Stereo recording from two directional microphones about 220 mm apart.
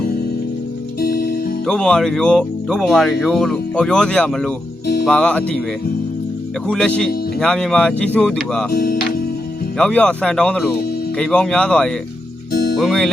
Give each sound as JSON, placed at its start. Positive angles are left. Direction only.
{"t": 1.0, "sound": "music", "side_deg": 45}
{"t": 1.6, "sound": "speech", "side_deg": 5}
{"t": 6.7, "sound": "speech", "side_deg": 5}
{"t": 8.8, "sound": "speech", "side_deg": 45}
{"t": 9.7, "sound": "speech", "side_deg": 5}